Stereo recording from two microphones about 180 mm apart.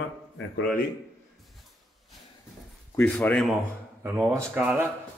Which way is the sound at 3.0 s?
5° left (ahead or behind).